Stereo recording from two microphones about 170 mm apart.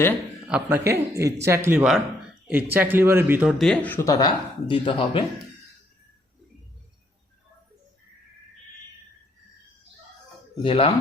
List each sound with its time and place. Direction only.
0.4 s speech: 10° right (ahead or behind)
3.6 s speech: 5° left (ahead or behind)
4.7 s speech: 30° left (ahead or behind)
10.6 s speech: 35° left (ahead or behind)